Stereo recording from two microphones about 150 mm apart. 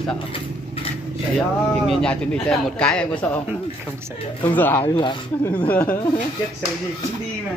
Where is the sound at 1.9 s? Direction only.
5° left (ahead or behind).